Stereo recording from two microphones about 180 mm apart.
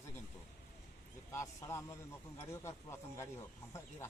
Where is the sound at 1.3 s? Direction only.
15° left (ahead or behind).